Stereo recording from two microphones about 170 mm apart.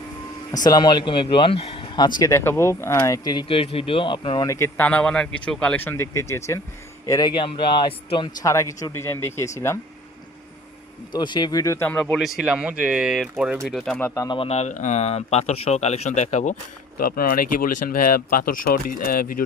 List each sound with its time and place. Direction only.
0.5 s speech: 20° left (ahead or behind)
4.4 s speech: 15° left (ahead or behind)
11.1 s speech: 25° left (ahead or behind); by 12.2 s 10° left (ahead or behind)
12.2 s speech: 5° right (ahead or behind)
14.0 s speech: 20° left (ahead or behind)
14.3 s speech: 40° left (ahead or behind)
17.0 s speech: 60° left (ahead or behind)